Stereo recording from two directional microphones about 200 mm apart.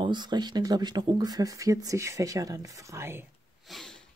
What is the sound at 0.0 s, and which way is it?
Speech, 20° right (ahead or behind).